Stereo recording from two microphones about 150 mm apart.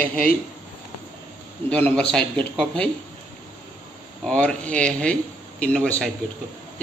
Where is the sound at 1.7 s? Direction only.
10° left (ahead or behind).